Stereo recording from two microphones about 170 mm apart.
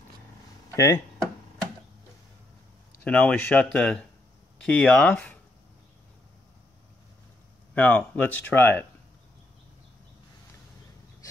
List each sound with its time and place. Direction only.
0.7 s speech: 20° left (ahead or behind)
3.1 s speech: 10° left (ahead or behind)
7.7 s speech: 10° left (ahead or behind)